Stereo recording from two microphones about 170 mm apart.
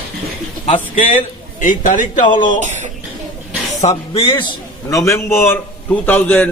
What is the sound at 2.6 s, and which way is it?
Speech, 45° right (ahead or behind).